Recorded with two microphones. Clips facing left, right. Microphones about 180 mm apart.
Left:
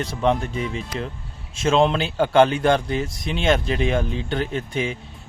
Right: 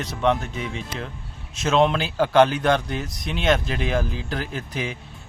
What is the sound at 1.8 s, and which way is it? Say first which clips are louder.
Speech: left 1 dB; centre (ahead or behind).